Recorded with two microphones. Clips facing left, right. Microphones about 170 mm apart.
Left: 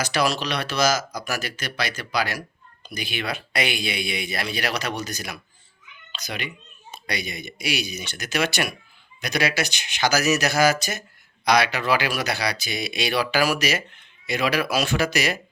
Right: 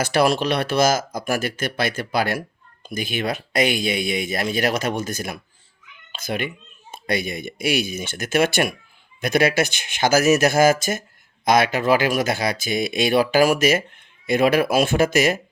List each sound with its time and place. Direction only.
0.0 s speech: 55° right (ahead or behind)